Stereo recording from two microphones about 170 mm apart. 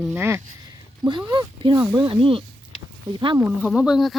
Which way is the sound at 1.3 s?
25° right (ahead or behind).